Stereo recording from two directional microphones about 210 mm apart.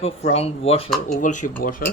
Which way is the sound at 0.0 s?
30° left (ahead or behind).